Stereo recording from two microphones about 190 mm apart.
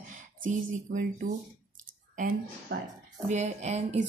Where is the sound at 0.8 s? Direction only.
45° right (ahead or behind).